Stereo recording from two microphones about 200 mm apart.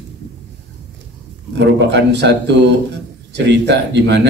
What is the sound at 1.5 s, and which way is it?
Speech, 60° right (ahead or behind).